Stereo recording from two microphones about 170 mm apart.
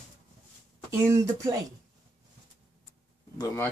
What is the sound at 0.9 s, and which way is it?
Speech, 15° right (ahead or behind).